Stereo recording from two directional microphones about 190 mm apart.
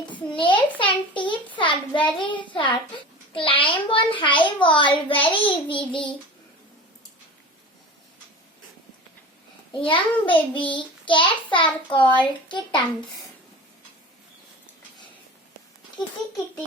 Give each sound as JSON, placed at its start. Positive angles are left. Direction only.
{"t": 0.3, "sound": "child singing", "side_deg": 25}
{"t": 9.8, "sound": "child singing", "side_deg": 25}
{"t": 16.0, "sound": "child singing", "side_deg": 25}